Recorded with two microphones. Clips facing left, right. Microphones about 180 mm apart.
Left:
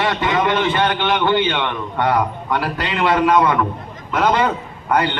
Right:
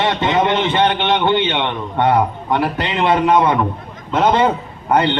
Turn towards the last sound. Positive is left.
turn(degrees=-25)  # may be behind; listen again after turning